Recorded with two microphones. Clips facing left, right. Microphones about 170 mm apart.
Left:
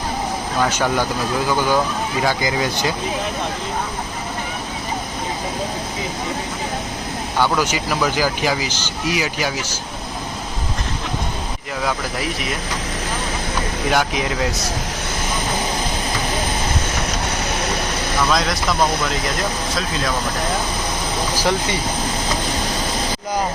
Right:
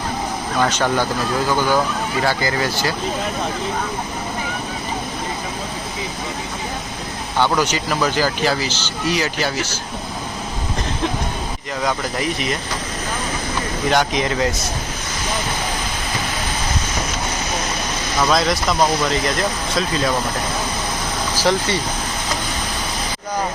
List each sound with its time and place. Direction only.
0.6 s speech: 10° left (ahead or behind)
2.2 s speech: 15° left (ahead or behind)
7.6 s speech: 10° left (ahead or behind)
13.9 s speech: 5° left (ahead or behind)
18.3 s speech: centre (ahead or behind)
21.3 s speech: 10° left (ahead or behind)